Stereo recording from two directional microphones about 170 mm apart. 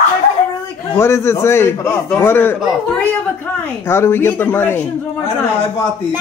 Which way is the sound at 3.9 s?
15° left (ahead or behind).